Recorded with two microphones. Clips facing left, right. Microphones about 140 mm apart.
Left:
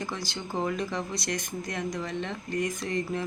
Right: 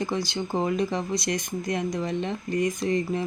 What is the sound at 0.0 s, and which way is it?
Speech, 20° right (ahead or behind).